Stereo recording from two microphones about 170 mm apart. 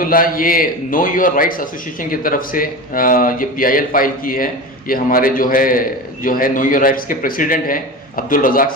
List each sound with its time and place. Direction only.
0.0 s a man's voice: 55° left (ahead or behind)